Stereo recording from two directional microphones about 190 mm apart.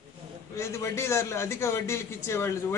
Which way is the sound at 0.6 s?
15° left (ahead or behind).